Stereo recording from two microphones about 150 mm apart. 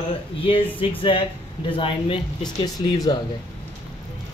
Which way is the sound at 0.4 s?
35° left (ahead or behind).